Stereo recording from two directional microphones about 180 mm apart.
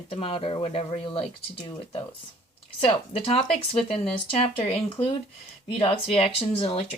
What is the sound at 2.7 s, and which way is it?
A woman's voice, 30° left (ahead or behind).